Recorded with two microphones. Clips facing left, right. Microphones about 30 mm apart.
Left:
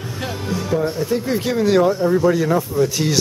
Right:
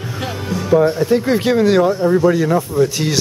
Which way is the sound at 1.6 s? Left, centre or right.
Centre.